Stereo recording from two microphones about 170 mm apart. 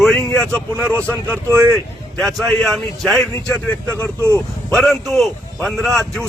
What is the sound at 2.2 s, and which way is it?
Speech, centre (ahead or behind).